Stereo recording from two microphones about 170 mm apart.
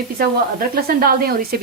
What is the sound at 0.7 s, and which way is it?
Speech, 65° right (ahead or behind).